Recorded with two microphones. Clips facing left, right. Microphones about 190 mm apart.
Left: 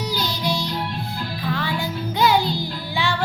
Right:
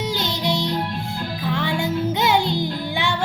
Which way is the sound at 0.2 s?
25° right (ahead or behind).